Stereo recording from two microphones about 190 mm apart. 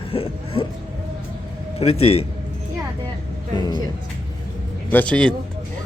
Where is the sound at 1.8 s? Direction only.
30° left (ahead or behind).